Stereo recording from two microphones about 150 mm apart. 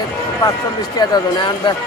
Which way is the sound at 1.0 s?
30° left (ahead or behind).